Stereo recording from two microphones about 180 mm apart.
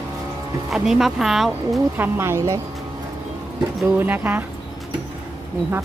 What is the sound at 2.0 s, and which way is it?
Speech, 15° right (ahead or behind).